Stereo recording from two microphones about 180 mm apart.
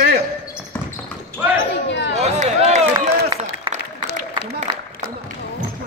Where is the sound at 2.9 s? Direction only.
25° right (ahead or behind).